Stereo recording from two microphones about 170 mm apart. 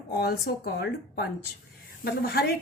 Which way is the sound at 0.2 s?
65° left (ahead or behind).